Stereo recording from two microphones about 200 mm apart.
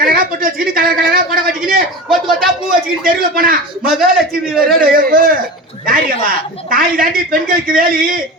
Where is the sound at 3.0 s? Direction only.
45° right (ahead or behind).